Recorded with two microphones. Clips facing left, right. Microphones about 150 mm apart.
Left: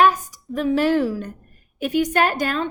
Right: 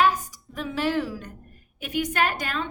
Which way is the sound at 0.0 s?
50° left (ahead or behind).